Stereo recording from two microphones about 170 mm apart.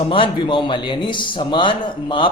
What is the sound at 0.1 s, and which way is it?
A man's voice, 30° left (ahead or behind).